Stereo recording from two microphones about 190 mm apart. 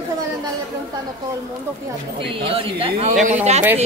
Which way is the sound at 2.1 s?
30° right (ahead or behind).